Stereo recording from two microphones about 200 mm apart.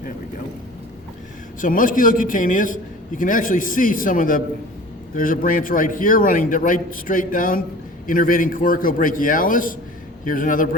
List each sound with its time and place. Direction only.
1.6 s a man's voice: 40° left (ahead or behind)